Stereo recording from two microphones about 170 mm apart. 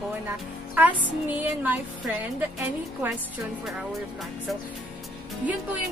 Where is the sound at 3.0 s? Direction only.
10° right (ahead or behind).